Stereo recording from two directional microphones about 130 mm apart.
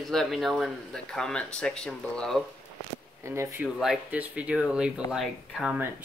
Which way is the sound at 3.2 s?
20° right (ahead or behind).